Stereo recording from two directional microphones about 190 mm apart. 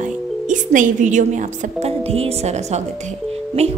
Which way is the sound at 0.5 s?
40° right (ahead or behind).